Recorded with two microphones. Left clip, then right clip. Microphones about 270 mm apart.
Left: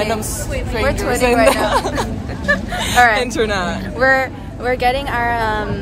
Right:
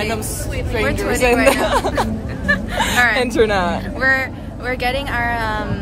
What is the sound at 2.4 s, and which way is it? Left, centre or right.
Speech, centre.